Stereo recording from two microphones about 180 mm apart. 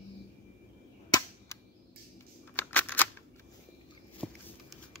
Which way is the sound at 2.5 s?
10° left (ahead or behind).